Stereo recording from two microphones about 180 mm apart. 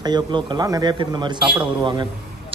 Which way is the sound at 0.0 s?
25° right (ahead or behind).